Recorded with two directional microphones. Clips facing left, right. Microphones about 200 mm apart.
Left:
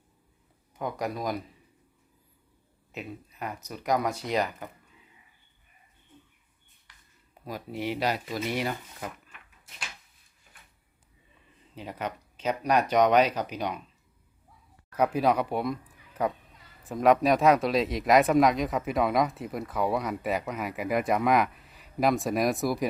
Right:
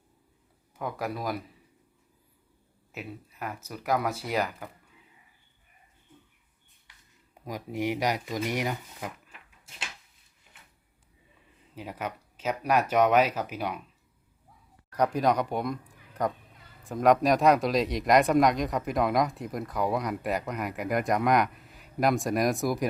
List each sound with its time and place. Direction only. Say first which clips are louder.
0.8 s speech: left 1 dB; 5° right (ahead or behind)
2.9 s speech: left 1 dB; 5° right (ahead or behind)
7.4 s speech: right 2 dB; 15° right (ahead or behind)
9.3 s a sound: right 1 dB; 30° right (ahead or behind)
11.7 s speech: left 1 dB; 10° right (ahead or behind)
14.9 s speech: left 1 dB; 5° left (ahead or behind)